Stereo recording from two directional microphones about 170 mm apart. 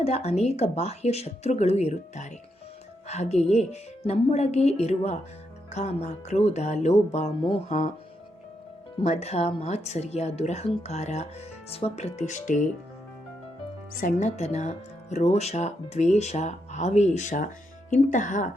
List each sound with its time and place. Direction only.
0.0 s speech: 40° left (ahead or behind)
9.0 s speech: 40° left (ahead or behind)
14.2 s speech: 40° left (ahead or behind)